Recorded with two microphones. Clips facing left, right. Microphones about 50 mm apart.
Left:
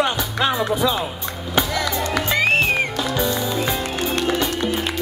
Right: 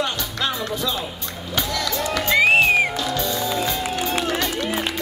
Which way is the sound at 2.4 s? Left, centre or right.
Centre.